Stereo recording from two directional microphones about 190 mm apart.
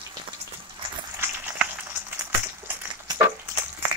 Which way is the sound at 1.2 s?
10° right (ahead or behind).